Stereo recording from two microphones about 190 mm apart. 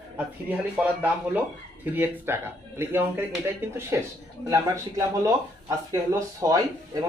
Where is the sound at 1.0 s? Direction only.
10° right (ahead or behind).